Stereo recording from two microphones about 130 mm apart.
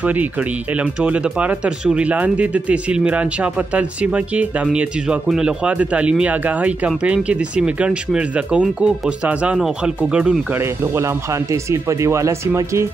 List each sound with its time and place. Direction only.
0.0 s speech: 10° right (ahead or behind)
11.5 s speech: 25° right (ahead or behind)